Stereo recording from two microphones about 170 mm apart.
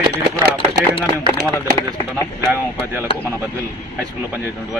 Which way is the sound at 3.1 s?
30° left (ahead or behind).